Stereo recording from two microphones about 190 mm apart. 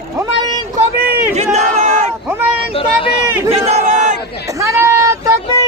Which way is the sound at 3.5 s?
40° right (ahead or behind).